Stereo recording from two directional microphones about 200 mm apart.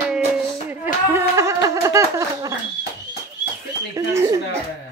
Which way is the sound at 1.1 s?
15° right (ahead or behind).